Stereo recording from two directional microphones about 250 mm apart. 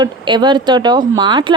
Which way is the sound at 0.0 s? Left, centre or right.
Centre.